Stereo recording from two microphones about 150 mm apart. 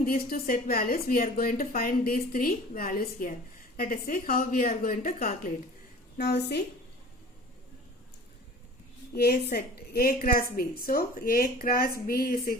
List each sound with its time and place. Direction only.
0.0 s a woman's voice: 80° left
9.1 s a woman's voice: 90° left; by 12.4 s 75° left (ahead or behind)